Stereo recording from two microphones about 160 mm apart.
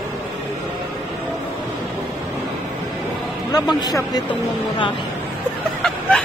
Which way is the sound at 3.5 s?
25° left (ahead or behind).